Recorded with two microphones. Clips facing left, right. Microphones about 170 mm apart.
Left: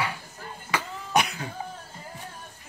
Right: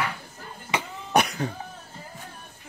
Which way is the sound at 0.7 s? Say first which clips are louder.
Right 1 dB; 20° right (ahead or behind).